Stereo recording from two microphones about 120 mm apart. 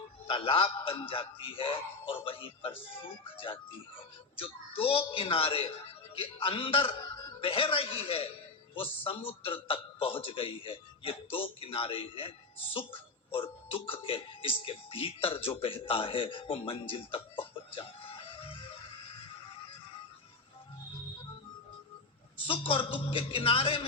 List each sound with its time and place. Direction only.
0.3 s speech: 50° left (ahead or behind)
4.4 s speech: 50° left (ahead or behind)
16.9 s music: 50° left (ahead or behind)
22.4 s speech: 50° left (ahead or behind)